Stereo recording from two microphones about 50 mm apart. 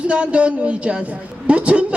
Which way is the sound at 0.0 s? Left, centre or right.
Right.